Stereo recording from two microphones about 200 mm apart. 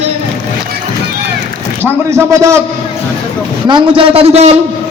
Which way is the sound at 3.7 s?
25° right (ahead or behind).